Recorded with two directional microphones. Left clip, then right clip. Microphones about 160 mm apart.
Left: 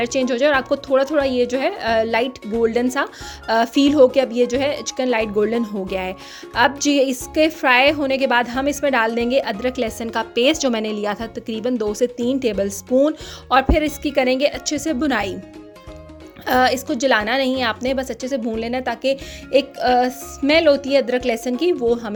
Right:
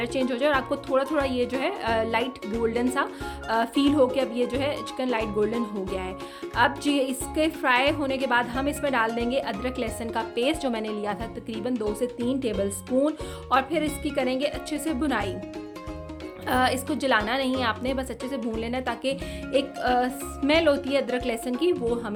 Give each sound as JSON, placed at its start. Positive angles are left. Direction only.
{"t": 0.0, "sound": "a woman's voice", "side_deg": 40}
{"t": 16.5, "sound": "a woman's voice", "side_deg": 40}